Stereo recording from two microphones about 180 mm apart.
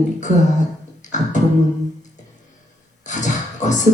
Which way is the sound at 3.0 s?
40° left (ahead or behind).